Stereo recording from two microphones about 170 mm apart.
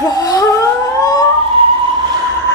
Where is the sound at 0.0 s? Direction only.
20° left (ahead or behind).